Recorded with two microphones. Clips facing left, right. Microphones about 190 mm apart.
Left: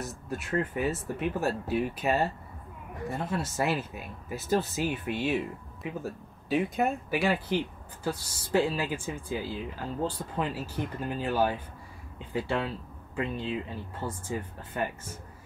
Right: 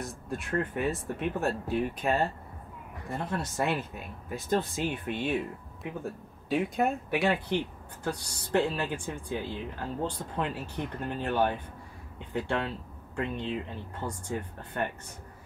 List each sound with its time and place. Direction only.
0.0 s speech: 5° left (ahead or behind)